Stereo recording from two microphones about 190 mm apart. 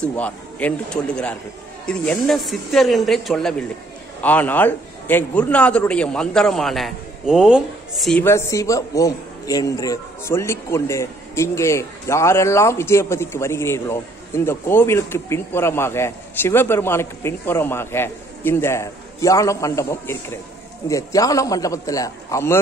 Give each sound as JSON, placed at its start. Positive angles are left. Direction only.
{"t": 0.0, "sound": "a man's voice", "side_deg": 10}
{"t": 8.2, "sound": "a man's voice", "side_deg": 15}